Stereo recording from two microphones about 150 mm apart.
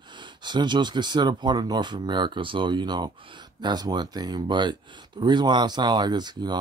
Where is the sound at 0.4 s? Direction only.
30° right (ahead or behind).